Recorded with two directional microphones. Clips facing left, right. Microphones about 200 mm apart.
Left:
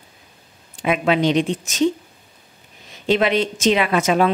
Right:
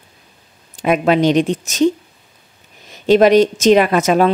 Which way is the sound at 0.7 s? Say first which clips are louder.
Right 4 dB; 45° right (ahead or behind).